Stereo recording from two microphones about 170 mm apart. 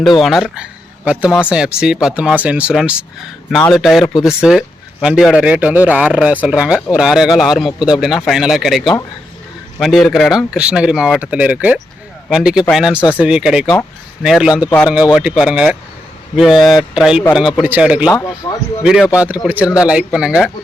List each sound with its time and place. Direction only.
0.2 s speech: centre (ahead or behind)
18.4 s speech: 20° left (ahead or behind)
18.8 s speech: 5° right (ahead or behind)